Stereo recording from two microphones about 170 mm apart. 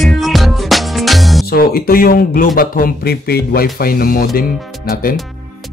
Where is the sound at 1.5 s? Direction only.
65° left (ahead or behind).